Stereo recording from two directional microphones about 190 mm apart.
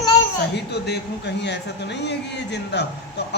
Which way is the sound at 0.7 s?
60° left (ahead or behind).